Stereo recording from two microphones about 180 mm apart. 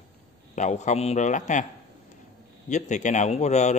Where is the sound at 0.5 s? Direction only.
40° left (ahead or behind).